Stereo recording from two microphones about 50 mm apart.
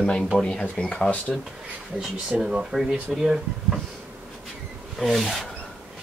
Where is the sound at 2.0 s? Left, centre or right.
Centre.